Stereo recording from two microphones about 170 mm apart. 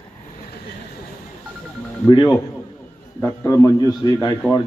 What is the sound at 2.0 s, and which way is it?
Speech, 25° left (ahead or behind).